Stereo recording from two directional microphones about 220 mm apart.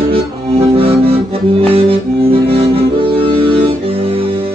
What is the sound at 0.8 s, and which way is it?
Music, 25° right (ahead or behind).